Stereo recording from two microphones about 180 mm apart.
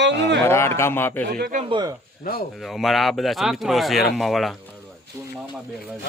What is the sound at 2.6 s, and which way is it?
Speech, centre (ahead or behind).